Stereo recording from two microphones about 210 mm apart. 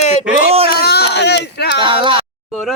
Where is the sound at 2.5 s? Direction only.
Centre (ahead or behind).